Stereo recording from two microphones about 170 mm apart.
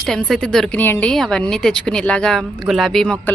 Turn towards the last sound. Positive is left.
turn(degrees=5)  # may be behind; listen again after turning